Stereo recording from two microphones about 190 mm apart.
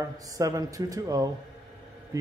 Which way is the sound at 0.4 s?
20° right (ahead or behind).